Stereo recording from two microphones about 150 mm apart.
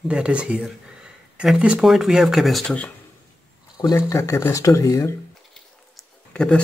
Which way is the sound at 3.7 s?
25° left (ahead or behind).